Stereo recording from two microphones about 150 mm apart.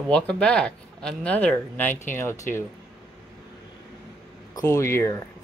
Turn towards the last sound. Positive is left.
turn(degrees=20)  # may be behind; listen again after turning